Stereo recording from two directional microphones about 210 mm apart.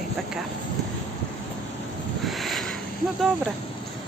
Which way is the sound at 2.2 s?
Centre (ahead or behind).